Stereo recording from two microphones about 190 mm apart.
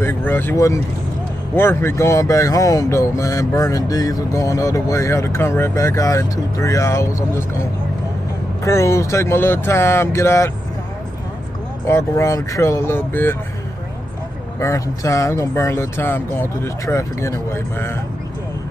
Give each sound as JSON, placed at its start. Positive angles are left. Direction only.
{"t": 0.0, "sound": "speech", "side_deg": 10}
{"t": 8.6, "sound": "speech", "side_deg": 15}
{"t": 11.9, "sound": "speech", "side_deg": 15}
{"t": 14.6, "sound": "speech", "side_deg": 15}